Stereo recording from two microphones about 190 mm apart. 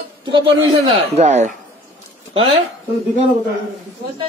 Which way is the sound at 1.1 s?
35° right (ahead or behind).